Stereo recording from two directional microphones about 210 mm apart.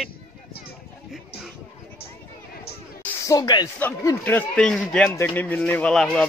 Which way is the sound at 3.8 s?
10° left (ahead or behind).